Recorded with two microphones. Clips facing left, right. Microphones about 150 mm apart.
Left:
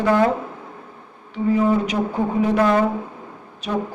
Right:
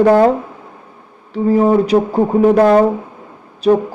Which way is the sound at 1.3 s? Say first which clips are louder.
Right 6 dB; 35° right (ahead or behind).